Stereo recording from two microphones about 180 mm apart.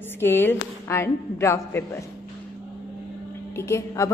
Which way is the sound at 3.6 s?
15° left (ahead or behind).